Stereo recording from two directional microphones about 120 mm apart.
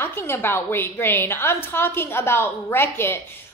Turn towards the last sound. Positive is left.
turn(degrees=20)  # may be behind; listen again after turning